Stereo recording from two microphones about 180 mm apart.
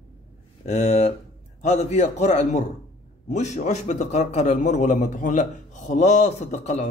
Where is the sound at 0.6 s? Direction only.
40° left (ahead or behind).